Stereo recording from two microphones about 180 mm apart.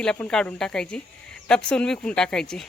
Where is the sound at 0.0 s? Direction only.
5° left (ahead or behind).